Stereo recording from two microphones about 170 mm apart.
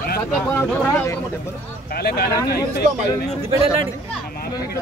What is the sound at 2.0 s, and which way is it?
Speech, 65° left (ahead or behind).